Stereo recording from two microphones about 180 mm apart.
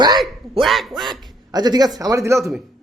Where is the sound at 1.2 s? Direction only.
20° right (ahead or behind).